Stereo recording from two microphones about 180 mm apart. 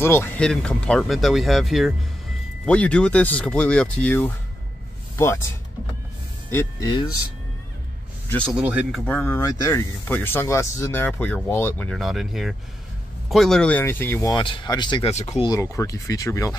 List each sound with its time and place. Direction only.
0.0 s speech: 15° left (ahead or behind)
6.5 s speech: 20° left (ahead or behind)
8.3 s speech: 5° left (ahead or behind)
8.5 s speech: 5° right (ahead or behind)
9.0 s speech: 10° left (ahead or behind)
14.3 s speech: 25° left (ahead or behind)
15.0 s speech: 35° left (ahead or behind)
15.4 s speech: 20° left (ahead or behind)